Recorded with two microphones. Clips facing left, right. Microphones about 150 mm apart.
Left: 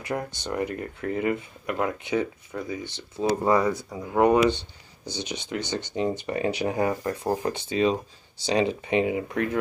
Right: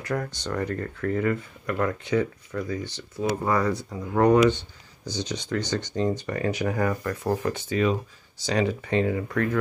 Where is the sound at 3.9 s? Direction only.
10° left (ahead or behind).